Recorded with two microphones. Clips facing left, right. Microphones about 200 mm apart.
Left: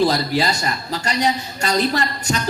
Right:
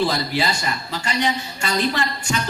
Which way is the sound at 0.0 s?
40° left (ahead or behind).